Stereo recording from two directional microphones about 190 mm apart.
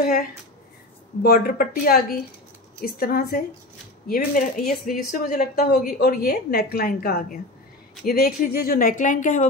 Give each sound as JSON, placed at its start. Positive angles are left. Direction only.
{"t": 1.2, "sound": "a woman's voice", "side_deg": 50}